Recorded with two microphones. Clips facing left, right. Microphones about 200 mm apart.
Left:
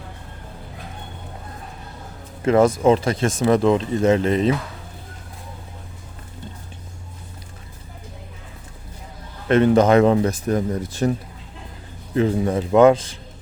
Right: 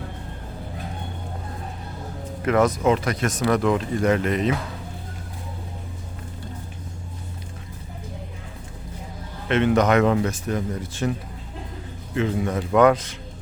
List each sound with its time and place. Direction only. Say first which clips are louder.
2.4 s speech: left 4 dB; 30° left (ahead or behind)
9.5 s speech: left 4 dB; 35° left (ahead or behind)
12.1 s speech: left 4 dB; 35° left (ahead or behind)